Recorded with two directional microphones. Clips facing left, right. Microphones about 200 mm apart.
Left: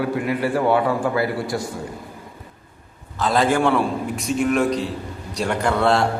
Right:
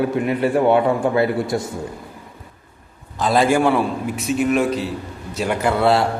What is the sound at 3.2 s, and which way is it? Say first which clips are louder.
A man's voice: right 2 dB; 10° right (ahead or behind).